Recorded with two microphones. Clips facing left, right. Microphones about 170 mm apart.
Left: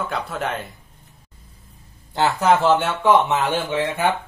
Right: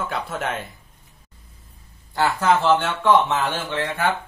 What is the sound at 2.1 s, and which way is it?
Speech, 20° left (ahead or behind).